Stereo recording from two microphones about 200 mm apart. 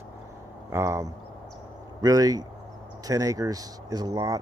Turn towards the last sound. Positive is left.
turn(degrees=-15)  # may be behind; listen again after turning